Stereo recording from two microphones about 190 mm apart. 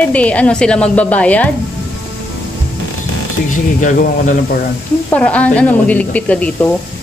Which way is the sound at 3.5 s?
40° left (ahead or behind).